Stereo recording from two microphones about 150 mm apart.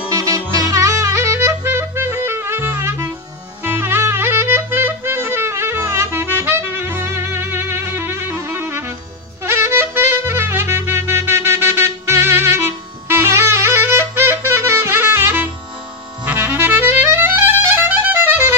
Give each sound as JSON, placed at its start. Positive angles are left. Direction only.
{"t": 0.1, "sound": "music", "side_deg": -25}